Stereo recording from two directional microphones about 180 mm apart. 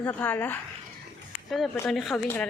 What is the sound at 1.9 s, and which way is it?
Speech, centre (ahead or behind).